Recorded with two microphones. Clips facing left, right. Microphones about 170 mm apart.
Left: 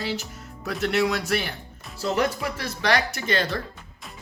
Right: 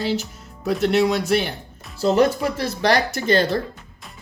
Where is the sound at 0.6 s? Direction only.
25° right (ahead or behind).